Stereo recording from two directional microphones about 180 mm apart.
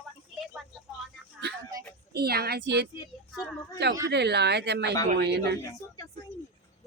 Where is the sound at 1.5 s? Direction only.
65° right (ahead or behind).